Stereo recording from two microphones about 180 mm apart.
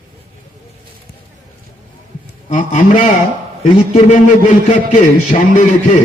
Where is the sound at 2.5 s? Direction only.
45° left (ahead or behind).